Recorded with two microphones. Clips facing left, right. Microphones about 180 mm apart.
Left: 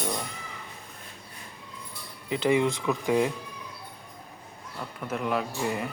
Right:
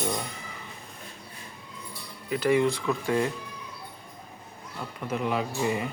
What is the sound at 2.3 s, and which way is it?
Speech, 20° left (ahead or behind).